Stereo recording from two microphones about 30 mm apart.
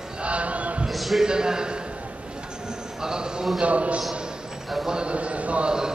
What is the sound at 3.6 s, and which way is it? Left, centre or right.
A man's voice, right.